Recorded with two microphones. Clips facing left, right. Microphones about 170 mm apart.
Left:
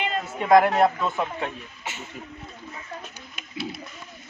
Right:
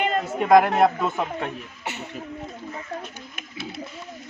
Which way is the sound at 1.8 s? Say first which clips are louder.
Right 4 dB; 65° right (ahead or behind).